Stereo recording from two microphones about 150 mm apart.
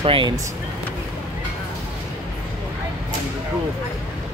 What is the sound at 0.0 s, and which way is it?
Speech, 35° right (ahead or behind).